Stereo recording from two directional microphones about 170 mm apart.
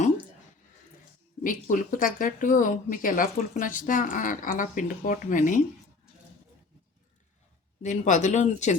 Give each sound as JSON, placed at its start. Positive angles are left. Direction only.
{"t": 1.5, "sound": "speech", "side_deg": 50}
{"t": 7.8, "sound": "speech", "side_deg": 45}